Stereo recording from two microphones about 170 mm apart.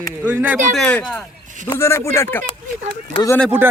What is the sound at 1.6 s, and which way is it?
Speech, 15° left (ahead or behind).